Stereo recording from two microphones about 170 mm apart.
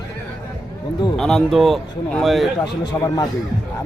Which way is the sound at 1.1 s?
Centre (ahead or behind).